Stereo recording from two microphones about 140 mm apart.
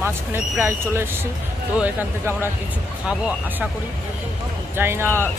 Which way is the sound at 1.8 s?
15° right (ahead or behind).